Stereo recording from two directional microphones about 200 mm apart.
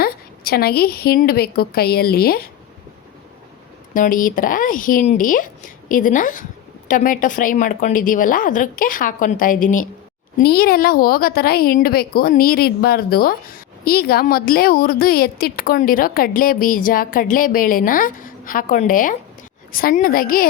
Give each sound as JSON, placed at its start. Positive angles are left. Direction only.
{"t": 0.0, "sound": "a woman's voice", "side_deg": 50}
{"t": 3.9, "sound": "a woman's voice", "side_deg": 40}